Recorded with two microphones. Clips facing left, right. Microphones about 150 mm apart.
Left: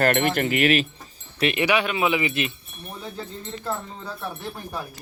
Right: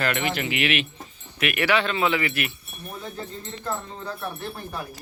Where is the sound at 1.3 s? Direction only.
25° left (ahead or behind).